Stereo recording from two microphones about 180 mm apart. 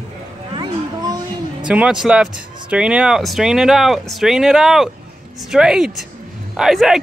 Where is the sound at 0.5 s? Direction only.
25° right (ahead or behind).